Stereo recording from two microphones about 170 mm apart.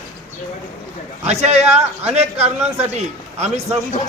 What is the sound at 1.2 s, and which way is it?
A man's voice, 40° right (ahead or behind).